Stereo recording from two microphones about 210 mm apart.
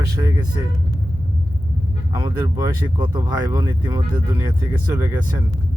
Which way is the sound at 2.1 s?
20° right (ahead or behind).